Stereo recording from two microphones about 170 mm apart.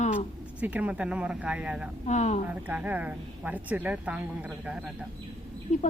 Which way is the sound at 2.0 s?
40° left (ahead or behind).